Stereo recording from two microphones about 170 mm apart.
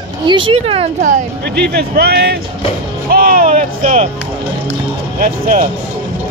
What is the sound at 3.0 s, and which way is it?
Speech, 60° right (ahead or behind).